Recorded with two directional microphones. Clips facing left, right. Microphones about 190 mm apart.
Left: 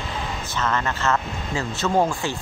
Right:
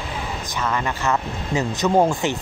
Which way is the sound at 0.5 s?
10° right (ahead or behind).